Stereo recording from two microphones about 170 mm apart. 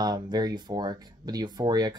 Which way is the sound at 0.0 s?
25° right (ahead or behind).